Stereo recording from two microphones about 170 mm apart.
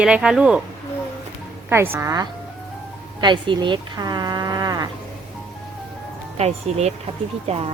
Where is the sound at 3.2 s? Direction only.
25° right (ahead or behind).